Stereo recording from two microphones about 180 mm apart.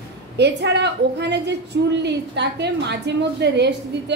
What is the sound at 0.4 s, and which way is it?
A woman's voice, 70° right (ahead or behind).